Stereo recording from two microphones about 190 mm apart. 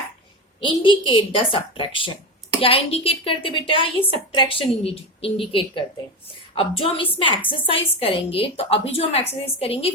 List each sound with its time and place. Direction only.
0.6 s a woman's voice: 25° left (ahead or behind)